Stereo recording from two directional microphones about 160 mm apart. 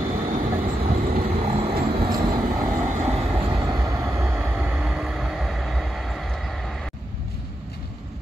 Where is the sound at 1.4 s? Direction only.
40° right (ahead or behind).